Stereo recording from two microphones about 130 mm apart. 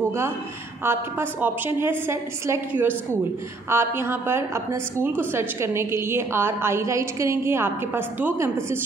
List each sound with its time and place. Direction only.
0.8 s a woman's voice: 15° right (ahead or behind)